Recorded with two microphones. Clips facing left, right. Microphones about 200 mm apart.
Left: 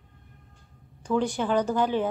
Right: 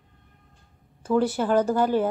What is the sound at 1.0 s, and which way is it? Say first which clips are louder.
Speech: right 3 dB; 5° right (ahead or behind).